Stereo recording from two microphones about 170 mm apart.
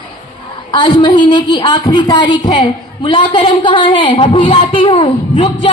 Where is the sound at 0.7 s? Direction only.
30° left (ahead or behind).